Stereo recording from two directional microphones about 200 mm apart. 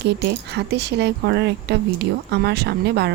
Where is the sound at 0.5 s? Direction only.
55° right (ahead or behind).